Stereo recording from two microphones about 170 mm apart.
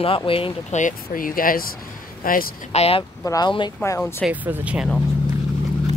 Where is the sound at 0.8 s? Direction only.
50° left (ahead or behind).